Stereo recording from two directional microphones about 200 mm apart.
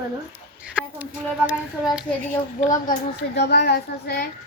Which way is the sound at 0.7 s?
5° right (ahead or behind).